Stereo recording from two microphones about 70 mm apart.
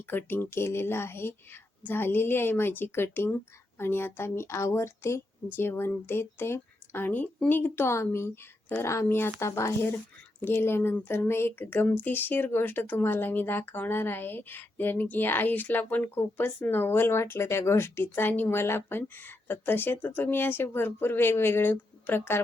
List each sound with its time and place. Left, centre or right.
0.1 s speech: left
10.4 s speech: left